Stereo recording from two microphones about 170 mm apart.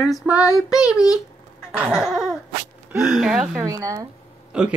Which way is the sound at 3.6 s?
20° right (ahead or behind).